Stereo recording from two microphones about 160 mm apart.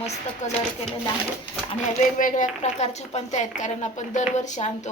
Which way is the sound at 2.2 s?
55° left (ahead or behind).